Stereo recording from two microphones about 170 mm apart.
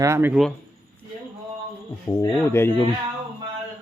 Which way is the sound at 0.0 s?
15° right (ahead or behind).